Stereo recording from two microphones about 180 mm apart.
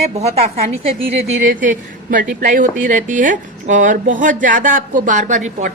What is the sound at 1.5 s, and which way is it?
A woman's voice, 50° right (ahead or behind).